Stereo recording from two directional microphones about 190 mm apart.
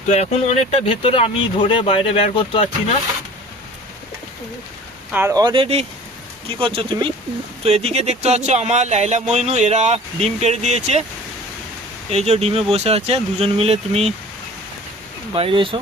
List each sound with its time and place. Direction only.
0.1 s speech: 35° left (ahead or behind)
5.1 s speech: 15° right (ahead or behind); by 11.0 s 35° right (ahead or behind)
12.1 s speech: 35° right (ahead or behind)
15.3 s speech: 30° right (ahead or behind)